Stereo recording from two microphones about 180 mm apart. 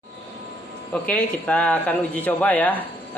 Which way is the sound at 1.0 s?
5° left (ahead or behind).